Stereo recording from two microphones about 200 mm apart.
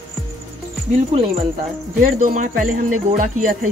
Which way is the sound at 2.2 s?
40° right (ahead or behind).